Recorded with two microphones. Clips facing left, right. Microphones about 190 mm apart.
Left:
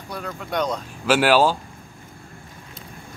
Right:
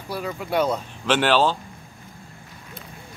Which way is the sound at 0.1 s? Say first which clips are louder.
Right 3 dB; 5° right (ahead or behind).